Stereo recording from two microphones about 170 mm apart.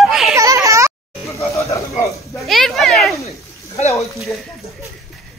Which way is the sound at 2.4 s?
Centre (ahead or behind).